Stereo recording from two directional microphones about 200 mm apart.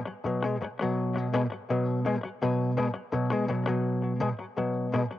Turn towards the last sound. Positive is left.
turn(degrees=0)  # may be behind; listen again after turning